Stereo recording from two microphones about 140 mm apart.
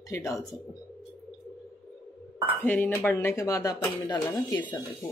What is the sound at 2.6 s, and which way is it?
Speech, 10° left (ahead or behind).